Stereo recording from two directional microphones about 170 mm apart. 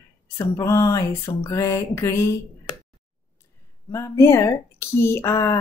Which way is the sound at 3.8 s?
15° left (ahead or behind).